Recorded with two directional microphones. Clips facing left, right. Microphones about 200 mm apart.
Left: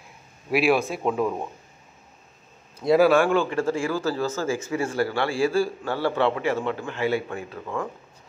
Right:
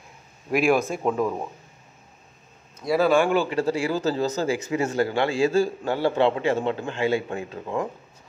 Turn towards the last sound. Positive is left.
turn(degrees=-20)  # may be behind; listen again after turning